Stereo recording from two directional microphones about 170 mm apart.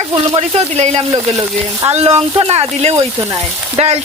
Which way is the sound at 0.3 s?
40° right (ahead or behind).